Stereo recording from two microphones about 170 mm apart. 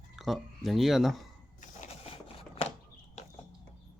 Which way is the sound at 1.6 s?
40° left (ahead or behind).